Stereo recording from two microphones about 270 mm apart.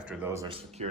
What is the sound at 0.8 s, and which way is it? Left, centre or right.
Speech, right.